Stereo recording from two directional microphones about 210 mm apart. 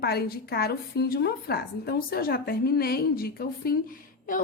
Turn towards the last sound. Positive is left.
turn(degrees=40)  # may be behind; listen again after turning